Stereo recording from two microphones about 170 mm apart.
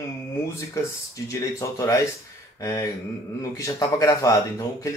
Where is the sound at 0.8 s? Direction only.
15° left (ahead or behind).